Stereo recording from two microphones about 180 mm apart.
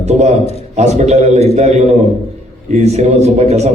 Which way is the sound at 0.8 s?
40° right (ahead or behind).